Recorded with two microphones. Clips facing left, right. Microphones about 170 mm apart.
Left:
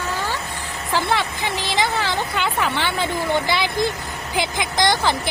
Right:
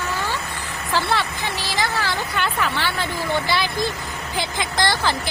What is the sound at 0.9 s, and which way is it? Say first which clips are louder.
A woman's voice: left 1 dB; 15° left (ahead or behind).